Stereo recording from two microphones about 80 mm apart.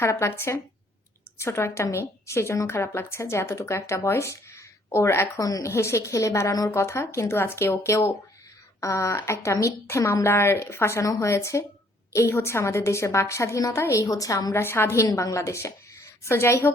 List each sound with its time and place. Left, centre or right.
0.0 s a woman's voice: left
14.5 s a woman's voice: left
15.0 s a woman's voice: left